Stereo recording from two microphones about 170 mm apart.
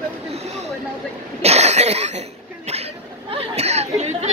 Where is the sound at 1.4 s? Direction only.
40° right (ahead or behind).